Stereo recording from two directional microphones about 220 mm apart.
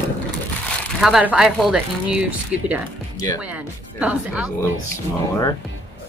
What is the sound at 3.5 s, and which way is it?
Speech, 5° right (ahead or behind).